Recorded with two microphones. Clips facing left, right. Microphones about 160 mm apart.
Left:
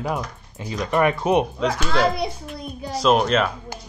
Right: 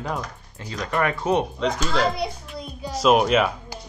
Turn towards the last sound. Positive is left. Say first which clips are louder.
# right 1 dB
turn(degrees=-5)  # may be behind; listen again after turning